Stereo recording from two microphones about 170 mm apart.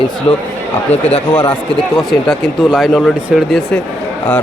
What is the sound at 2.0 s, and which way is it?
Speech, centre (ahead or behind).